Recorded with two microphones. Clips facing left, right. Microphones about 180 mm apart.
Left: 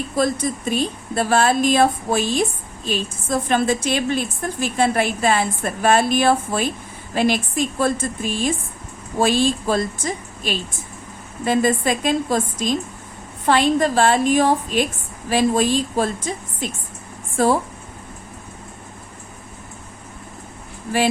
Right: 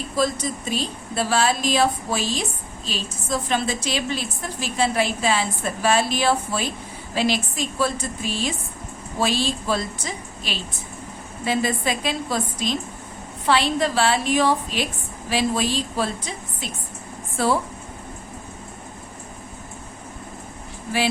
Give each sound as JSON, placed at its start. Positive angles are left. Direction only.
{"t": 0.2, "sound": "speech", "side_deg": 55}